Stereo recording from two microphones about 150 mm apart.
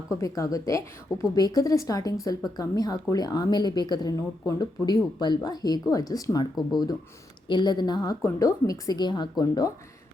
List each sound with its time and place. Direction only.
0.2 s speech: 20° left (ahead or behind)